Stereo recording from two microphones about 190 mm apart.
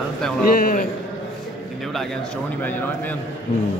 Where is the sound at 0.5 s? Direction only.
50° left (ahead or behind).